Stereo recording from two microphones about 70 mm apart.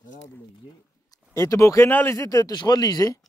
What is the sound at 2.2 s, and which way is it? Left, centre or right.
Speech, left.